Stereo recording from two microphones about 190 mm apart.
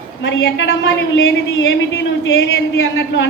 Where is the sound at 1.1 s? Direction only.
90° left.